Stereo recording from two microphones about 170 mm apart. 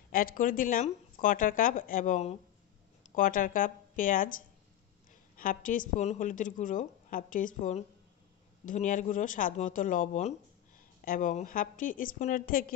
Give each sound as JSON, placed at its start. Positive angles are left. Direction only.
{"t": 0.1, "sound": "a woman's voice", "side_deg": 55}
{"t": 5.4, "sound": "a woman's voice", "side_deg": 55}